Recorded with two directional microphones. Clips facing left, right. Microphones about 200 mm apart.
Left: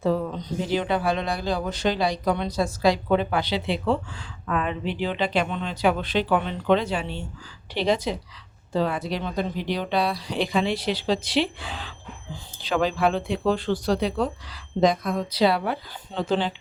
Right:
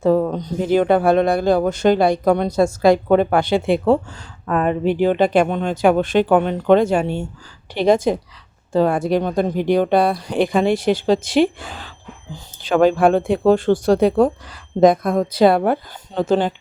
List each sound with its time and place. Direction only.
0.0 s speech: 50° right (ahead or behind)